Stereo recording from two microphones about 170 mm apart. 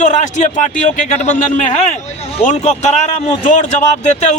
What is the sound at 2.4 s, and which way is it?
Speech, 45° left (ahead or behind).